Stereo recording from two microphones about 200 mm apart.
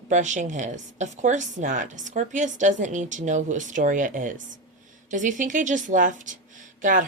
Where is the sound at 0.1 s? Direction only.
35° right (ahead or behind).